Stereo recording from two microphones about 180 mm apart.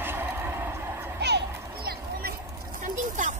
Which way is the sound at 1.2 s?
65° right (ahead or behind).